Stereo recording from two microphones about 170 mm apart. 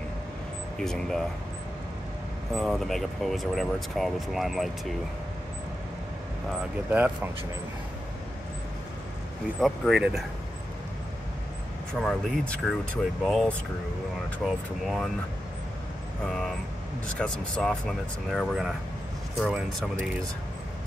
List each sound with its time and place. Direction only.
0.7 s speech: 5° left (ahead or behind)
2.5 s speech: centre (ahead or behind)
6.5 s speech: 10° right (ahead or behind)
9.6 s speech: centre (ahead or behind)
11.9 s speech: 5° left (ahead or behind)
17.2 s speech: 5° left (ahead or behind)